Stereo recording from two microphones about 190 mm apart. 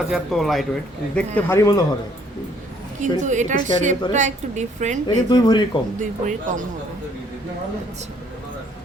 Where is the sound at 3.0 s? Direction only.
40° right (ahead or behind).